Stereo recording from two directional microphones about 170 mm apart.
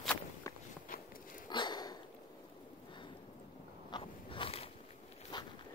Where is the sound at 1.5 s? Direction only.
25° left (ahead or behind).